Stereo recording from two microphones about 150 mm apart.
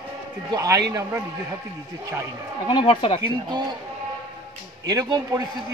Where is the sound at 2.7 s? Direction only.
30° left (ahead or behind).